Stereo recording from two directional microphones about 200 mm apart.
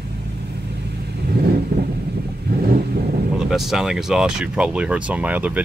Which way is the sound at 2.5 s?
55° right (ahead or behind).